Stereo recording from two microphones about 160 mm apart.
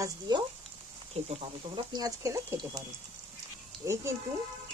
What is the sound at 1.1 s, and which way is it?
Speech, 40° right (ahead or behind).